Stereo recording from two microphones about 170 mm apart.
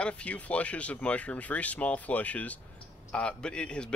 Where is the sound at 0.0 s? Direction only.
5° left (ahead or behind).